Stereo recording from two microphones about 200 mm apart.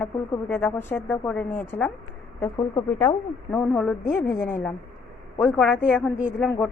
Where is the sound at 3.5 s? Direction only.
10° left (ahead or behind).